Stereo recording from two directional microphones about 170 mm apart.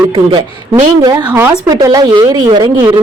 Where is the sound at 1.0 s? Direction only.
25° right (ahead or behind).